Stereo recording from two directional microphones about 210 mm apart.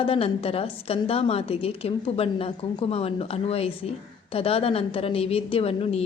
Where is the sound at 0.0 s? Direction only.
25° left (ahead or behind).